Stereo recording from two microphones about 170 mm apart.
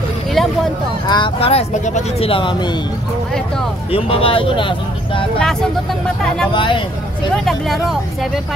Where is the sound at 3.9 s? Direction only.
35° left (ahead or behind).